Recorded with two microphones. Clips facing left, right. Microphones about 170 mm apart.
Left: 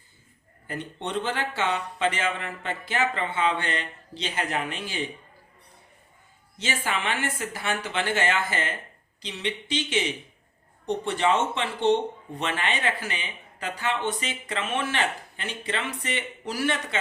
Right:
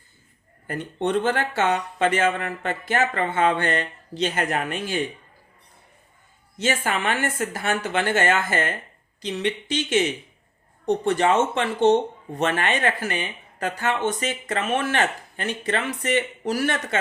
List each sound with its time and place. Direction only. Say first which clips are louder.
0.7 s speech: right 7 dB; 50° right (ahead or behind)
6.6 s speech: right 5 dB; 50° right (ahead or behind)